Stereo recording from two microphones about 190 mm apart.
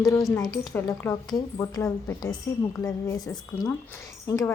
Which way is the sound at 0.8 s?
15° left (ahead or behind).